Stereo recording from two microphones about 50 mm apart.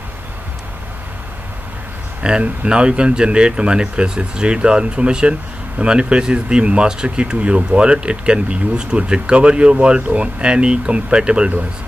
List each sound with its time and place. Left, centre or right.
2.2 s speech: right